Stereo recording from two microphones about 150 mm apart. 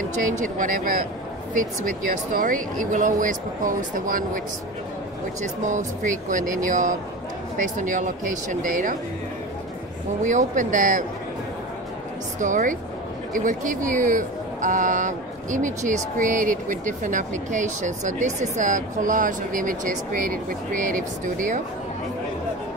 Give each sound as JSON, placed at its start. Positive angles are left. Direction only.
{"t": 0.2, "sound": "speech", "side_deg": -60}
{"t": 5.4, "sound": "speech", "side_deg": -55}
{"t": 10.2, "sound": "speech", "side_deg": -55}
{"t": 12.4, "sound": "speech", "side_deg": -60}